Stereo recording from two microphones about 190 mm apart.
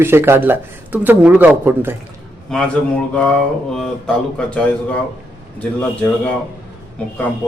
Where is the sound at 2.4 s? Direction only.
5° left (ahead or behind).